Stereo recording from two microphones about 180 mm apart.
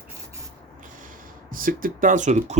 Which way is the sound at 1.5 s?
50° right (ahead or behind).